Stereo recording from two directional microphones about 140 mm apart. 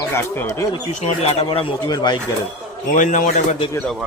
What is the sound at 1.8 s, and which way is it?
Speech, 30° left (ahead or behind).